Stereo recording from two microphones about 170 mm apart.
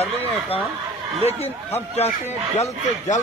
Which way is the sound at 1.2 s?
40° left (ahead or behind).